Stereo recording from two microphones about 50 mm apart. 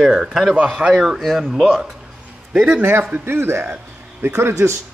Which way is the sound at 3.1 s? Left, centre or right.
Right.